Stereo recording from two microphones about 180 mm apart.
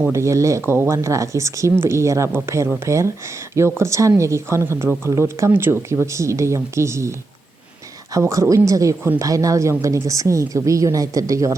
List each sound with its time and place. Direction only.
0.1 s a woman's voice: 15° right (ahead or behind)
8.1 s a woman's voice: 15° right (ahead or behind)